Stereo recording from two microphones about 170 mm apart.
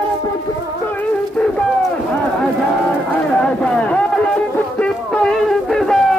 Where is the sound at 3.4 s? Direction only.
5° left (ahead or behind).